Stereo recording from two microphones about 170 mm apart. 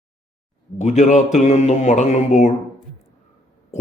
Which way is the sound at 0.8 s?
40° left (ahead or behind).